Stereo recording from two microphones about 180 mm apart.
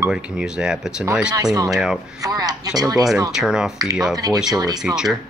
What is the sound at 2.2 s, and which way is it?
Speech, 20° right (ahead or behind).